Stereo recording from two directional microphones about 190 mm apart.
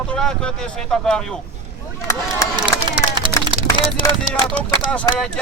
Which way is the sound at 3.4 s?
25° right (ahead or behind).